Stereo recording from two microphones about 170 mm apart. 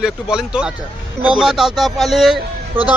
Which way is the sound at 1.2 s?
5° right (ahead or behind).